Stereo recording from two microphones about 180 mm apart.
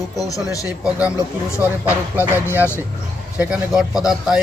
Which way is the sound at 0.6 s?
5° right (ahead or behind).